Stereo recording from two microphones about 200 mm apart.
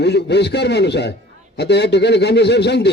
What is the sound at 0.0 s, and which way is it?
A man's voice, 60° left (ahead or behind).